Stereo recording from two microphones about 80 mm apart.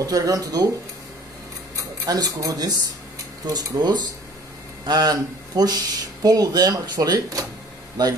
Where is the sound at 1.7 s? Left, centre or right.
Right.